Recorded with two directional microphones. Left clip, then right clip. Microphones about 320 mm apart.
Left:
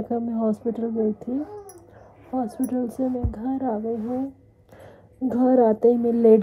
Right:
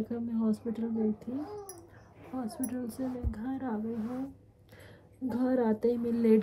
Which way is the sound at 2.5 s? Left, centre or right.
Centre.